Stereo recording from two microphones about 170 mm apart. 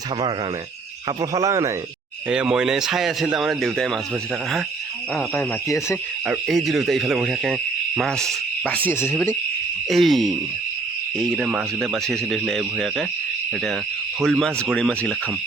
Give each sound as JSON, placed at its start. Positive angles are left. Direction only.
{"t": 1.0, "sound": "speech", "side_deg": -20}
{"t": 2.3, "sound": "speech", "side_deg": -5}
{"t": 5.3, "sound": "speech", "side_deg": 15}
{"t": 6.2, "sound": "speech", "side_deg": -5}
{"t": 9.9, "sound": "speech", "side_deg": 0}
{"t": 14.2, "sound": "speech", "side_deg": 0}